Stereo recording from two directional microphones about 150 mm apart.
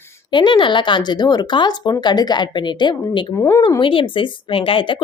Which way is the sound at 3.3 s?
15° left (ahead or behind).